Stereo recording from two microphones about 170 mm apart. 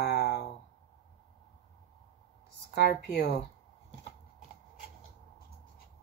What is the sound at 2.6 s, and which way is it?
Speech, 75° left (ahead or behind).